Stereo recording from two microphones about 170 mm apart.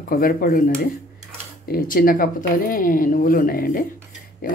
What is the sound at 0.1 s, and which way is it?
Speech, 60° left (ahead or behind).